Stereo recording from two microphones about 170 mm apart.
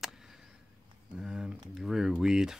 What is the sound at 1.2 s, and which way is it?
Speech, 5° right (ahead or behind).